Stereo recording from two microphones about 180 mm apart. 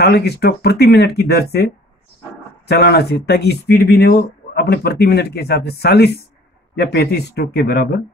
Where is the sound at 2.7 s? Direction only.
65° left (ahead or behind).